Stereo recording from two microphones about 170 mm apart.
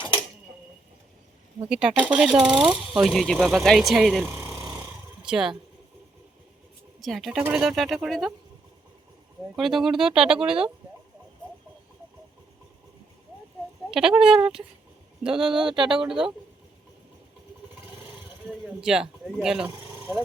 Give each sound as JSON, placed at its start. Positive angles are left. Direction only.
{"t": 1.7, "sound": "speech", "side_deg": -5}
{"t": 4.2, "sound": "jackhammer", "side_deg": -15}
{"t": 7.0, "sound": "speech", "side_deg": 0}
{"t": 9.6, "sound": "speech", "side_deg": 0}
{"t": 13.9, "sound": "speech", "side_deg": -5}
{"t": 18.6, "sound": "speech", "side_deg": -5}
{"t": 19.7, "sound": "a sound", "side_deg": -15}